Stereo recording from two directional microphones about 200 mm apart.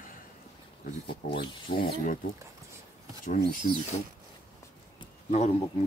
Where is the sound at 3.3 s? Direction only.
45° left (ahead or behind).